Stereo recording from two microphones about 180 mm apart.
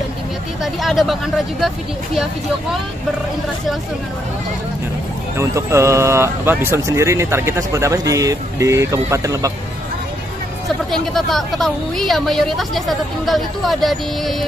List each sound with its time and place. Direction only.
0.7 s a woman's voice: centre (ahead or behind)
5.4 s speech: 15° right (ahead or behind)
10.9 s a woman's voice: centre (ahead or behind)